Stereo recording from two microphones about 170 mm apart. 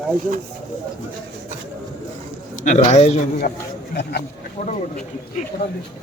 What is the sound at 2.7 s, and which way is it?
Speech, 45° left (ahead or behind).